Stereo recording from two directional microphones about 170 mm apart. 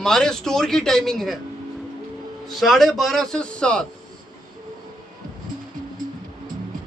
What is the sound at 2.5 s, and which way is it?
A man's voice, centre (ahead or behind).